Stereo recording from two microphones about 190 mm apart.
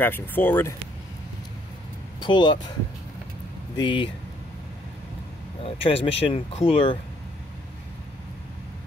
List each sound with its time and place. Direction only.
0.0 s speech: 10° left (ahead or behind)
2.1 s speech: 25° left (ahead or behind)
3.7 s speech: 25° left (ahead or behind)
5.6 s speech: 30° left (ahead or behind)